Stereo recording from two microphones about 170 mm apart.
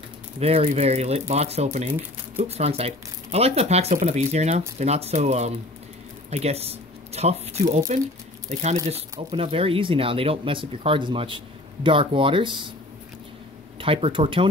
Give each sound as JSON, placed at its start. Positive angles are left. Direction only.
{"t": 0.4, "sound": "speech", "side_deg": -35}
{"t": 9.3, "sound": "speech", "side_deg": -35}
{"t": 13.7, "sound": "speech", "side_deg": -30}